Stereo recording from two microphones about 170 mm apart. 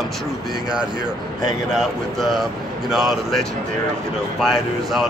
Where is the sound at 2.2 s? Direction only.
Centre (ahead or behind).